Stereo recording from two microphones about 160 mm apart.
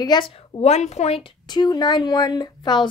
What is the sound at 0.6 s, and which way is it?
A woman's voice, 45° left (ahead or behind).